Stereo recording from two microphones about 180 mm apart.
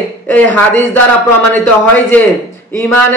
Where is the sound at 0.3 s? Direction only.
10° left (ahead or behind).